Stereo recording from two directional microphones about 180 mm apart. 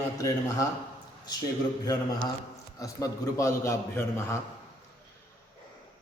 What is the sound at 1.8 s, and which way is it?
A man's voice, 20° left (ahead or behind).